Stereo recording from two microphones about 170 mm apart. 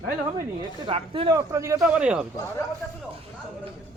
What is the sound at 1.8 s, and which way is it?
Speech, 5° right (ahead or behind).